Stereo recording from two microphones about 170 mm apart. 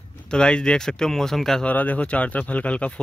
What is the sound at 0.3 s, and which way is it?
Speech, 5° left (ahead or behind).